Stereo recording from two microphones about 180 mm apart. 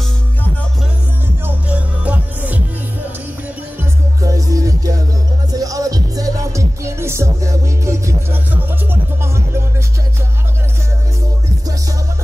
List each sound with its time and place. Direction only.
1.4 s music: 5° right (ahead or behind)
4.2 s music: 20° right (ahead or behind)